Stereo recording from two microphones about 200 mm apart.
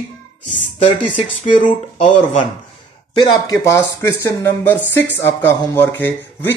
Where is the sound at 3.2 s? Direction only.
15° left (ahead or behind).